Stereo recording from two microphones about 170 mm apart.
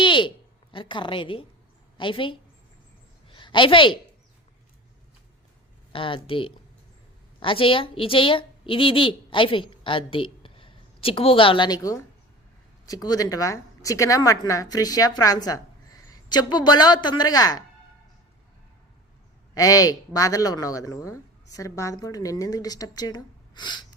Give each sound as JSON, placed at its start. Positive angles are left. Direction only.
{"t": 0.0, "sound": "a woman's voice", "side_deg": 30}
{"t": 3.2, "sound": "a sound", "side_deg": 30}
{"t": 5.9, "sound": "a woman's voice", "side_deg": 30}
{"t": 19.5, "sound": "a woman's voice", "side_deg": 20}